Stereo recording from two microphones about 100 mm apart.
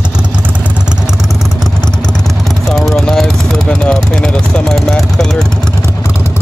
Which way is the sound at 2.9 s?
5° left (ahead or behind).